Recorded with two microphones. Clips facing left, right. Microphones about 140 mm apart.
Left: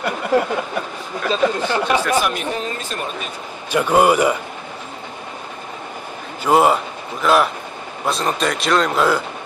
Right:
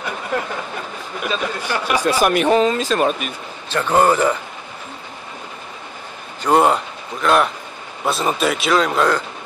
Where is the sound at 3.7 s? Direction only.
10° left (ahead or behind).